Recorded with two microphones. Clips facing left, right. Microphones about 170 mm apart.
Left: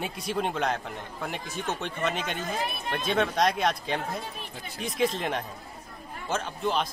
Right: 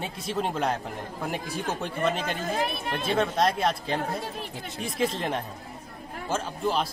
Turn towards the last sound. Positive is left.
turn(degrees=-5)  # may be behind; listen again after turning